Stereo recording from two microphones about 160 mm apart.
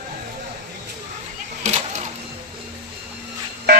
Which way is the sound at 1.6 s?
45° right (ahead or behind).